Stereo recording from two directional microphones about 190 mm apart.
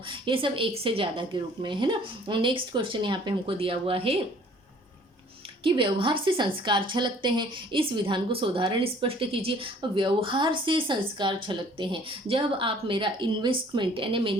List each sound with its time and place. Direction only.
0.1 s a woman's voice: 25° right (ahead or behind)
5.6 s a woman's voice: 25° right (ahead or behind)